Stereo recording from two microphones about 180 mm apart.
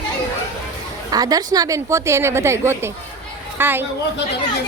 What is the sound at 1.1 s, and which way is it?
A woman's voice, 20° right (ahead or behind).